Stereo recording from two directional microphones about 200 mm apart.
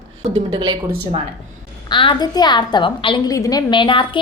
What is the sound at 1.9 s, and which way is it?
A woman's voice, 25° left (ahead or behind).